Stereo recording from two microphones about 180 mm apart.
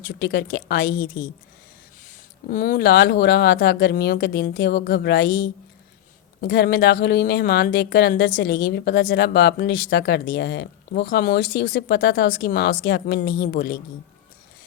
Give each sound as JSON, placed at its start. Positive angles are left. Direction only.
{"t": 0.1, "sound": "speech", "side_deg": 65}
{"t": 2.5, "sound": "speech", "side_deg": 50}